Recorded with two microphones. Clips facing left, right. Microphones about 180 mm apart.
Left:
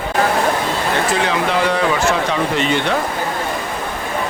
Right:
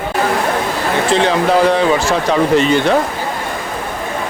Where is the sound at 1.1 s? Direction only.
30° right (ahead or behind).